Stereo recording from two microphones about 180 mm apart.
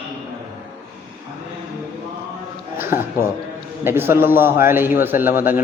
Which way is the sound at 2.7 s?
15° right (ahead or behind).